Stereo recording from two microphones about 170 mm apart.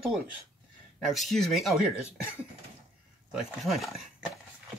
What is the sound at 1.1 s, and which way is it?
Speech, centre (ahead or behind).